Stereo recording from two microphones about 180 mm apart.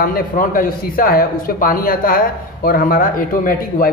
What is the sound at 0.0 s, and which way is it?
A man's voice, 50° left (ahead or behind).